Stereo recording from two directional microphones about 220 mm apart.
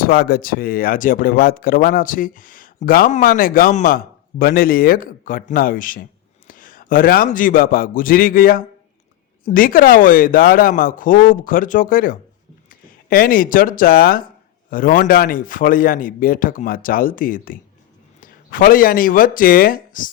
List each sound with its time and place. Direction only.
0.0 s a man's voice: 45° left (ahead or behind)